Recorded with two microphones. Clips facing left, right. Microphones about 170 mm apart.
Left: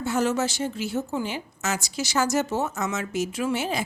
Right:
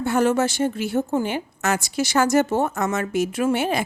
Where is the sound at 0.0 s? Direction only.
55° right (ahead or behind).